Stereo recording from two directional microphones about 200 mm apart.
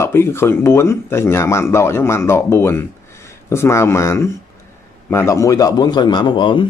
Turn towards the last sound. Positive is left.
turn(degrees=25)  # may be behind; listen again after turning